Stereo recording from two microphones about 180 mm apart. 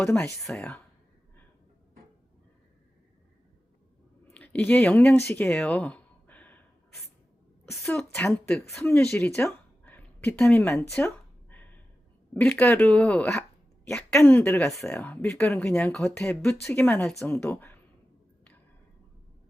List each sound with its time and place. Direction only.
0.0 s speech: 5° left (ahead or behind)
4.4 s speech: 10° left (ahead or behind)
5.3 s a sound: 10° left (ahead or behind)
7.8 s a woman's voice: 10° left (ahead or behind)